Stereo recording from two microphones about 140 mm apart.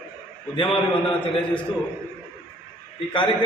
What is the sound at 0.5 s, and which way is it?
Speech, 35° left (ahead or behind).